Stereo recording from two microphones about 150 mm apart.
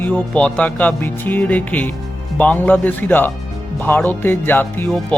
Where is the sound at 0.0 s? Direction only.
10° left (ahead or behind).